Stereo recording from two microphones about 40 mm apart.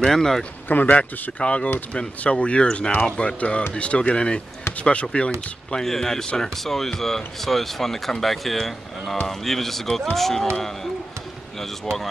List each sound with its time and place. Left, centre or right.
0.0 s speech: centre
0.7 s a man's voice: left
1.4 s speech: left
5.8 s speech: centre
11.6 s speech: centre